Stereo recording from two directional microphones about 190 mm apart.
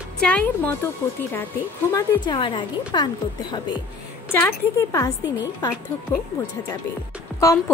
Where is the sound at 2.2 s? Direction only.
25° left (ahead or behind).